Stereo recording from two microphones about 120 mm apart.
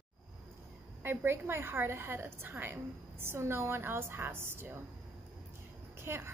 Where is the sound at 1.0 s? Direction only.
20° right (ahead or behind).